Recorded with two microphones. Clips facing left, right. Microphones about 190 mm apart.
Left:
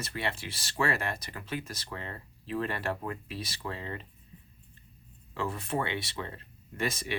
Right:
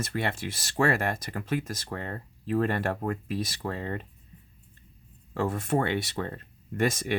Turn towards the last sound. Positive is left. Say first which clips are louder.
# right 6 dB
turn(degrees=-50)  # may be behind; listen again after turning